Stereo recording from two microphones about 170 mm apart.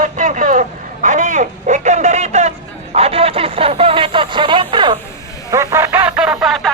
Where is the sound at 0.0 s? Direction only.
50° right (ahead or behind).